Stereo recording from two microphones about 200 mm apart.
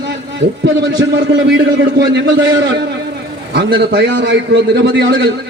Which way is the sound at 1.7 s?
65° right (ahead or behind).